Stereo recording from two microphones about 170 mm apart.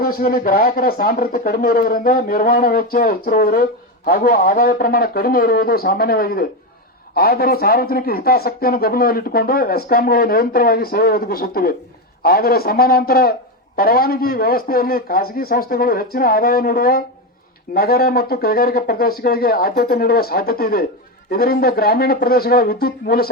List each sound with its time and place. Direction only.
0.0 s a man's voice: 60° left (ahead or behind)